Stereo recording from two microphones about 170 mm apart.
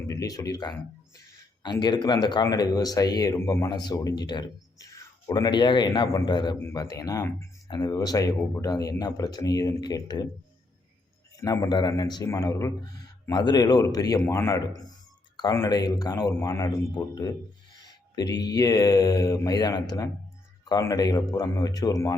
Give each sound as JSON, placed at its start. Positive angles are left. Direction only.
{"t": 0.1, "sound": "speech", "side_deg": 20}
{"t": 11.3, "sound": "speech", "side_deg": 20}